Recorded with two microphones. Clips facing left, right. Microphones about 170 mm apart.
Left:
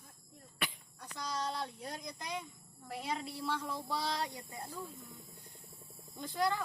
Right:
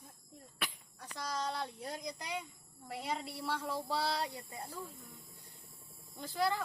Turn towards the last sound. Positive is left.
turn(degrees=-5)  # may be behind; listen again after turning